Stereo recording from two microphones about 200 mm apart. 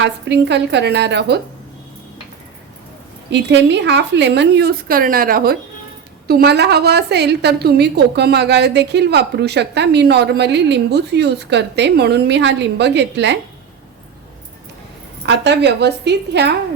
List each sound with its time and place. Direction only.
0.0 s a woman's voice: 60° right (ahead or behind)
3.2 s a woman's voice: 60° right (ahead or behind)
15.3 s a woman's voice: 60° right (ahead or behind)